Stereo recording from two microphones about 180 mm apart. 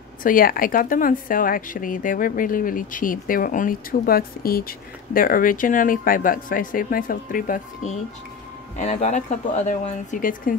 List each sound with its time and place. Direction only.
0.2 s speech: 50° left (ahead or behind)